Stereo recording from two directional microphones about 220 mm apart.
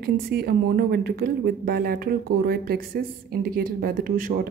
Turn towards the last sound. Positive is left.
turn(degrees=-40)  # may be behind; listen again after turning